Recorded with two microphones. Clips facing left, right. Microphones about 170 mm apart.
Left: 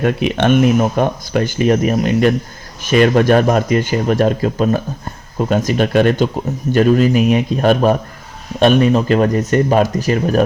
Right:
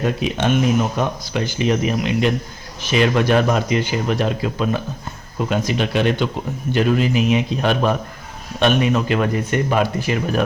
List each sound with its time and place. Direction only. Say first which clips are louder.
0.0 s speech: left 5 dB; 60° left (ahead or behind); by 10.4 s 40° left (ahead or behind)